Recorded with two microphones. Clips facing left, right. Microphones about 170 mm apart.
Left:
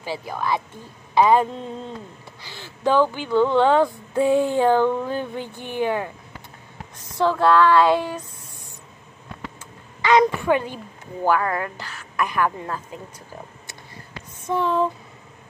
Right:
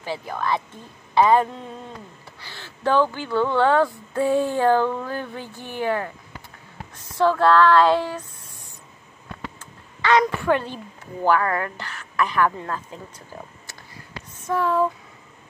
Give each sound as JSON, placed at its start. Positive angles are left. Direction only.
{"t": 0.0, "sound": "a woman's voice", "side_deg": 10}
{"t": 10.0, "sound": "a woman's voice", "side_deg": 15}
{"t": 14.5, "sound": "a sound", "side_deg": 20}